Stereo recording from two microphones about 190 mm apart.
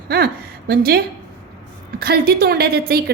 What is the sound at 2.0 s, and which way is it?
A woman's voice, 55° right (ahead or behind).